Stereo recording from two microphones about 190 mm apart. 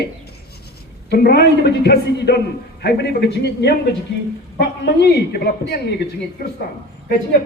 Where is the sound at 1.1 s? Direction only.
55° left (ahead or behind).